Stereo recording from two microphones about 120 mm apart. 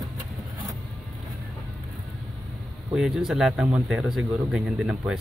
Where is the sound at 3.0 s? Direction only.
5° right (ahead or behind).